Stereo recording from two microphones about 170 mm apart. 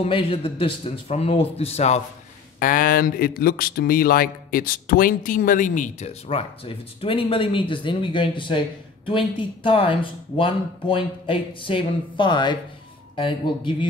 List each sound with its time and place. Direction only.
0.0 s speech: 35° left (ahead or behind)
2.6 s speech: 55° left (ahead or behind); by 13.8 s 30° left (ahead or behind)